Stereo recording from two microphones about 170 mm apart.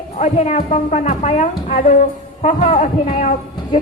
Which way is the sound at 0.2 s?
40° left (ahead or behind).